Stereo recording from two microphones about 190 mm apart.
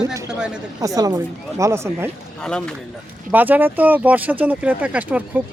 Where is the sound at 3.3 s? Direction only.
10° right (ahead or behind).